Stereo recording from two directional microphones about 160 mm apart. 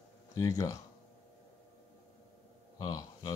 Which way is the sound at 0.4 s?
20° left (ahead or behind).